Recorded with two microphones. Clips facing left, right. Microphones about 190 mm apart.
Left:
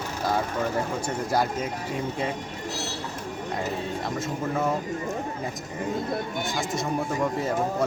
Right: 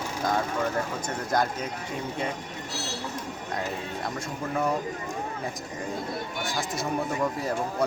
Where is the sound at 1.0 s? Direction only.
10° left (ahead or behind).